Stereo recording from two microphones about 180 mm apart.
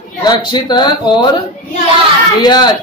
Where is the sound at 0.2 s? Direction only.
25° left (ahead or behind).